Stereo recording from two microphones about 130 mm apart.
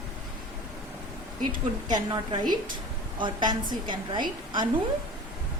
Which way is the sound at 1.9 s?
35° right (ahead or behind).